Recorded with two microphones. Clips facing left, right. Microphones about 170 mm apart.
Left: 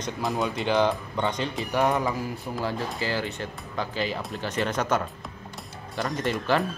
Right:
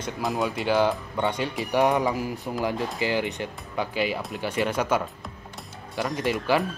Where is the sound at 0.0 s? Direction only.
Centre (ahead or behind).